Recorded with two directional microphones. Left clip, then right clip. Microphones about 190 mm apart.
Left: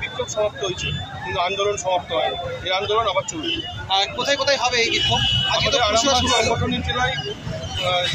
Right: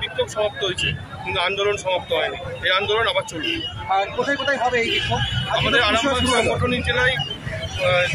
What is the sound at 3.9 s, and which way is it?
Speech, 25° right (ahead or behind).